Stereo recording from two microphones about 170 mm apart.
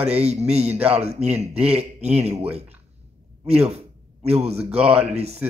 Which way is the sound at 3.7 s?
40° right (ahead or behind).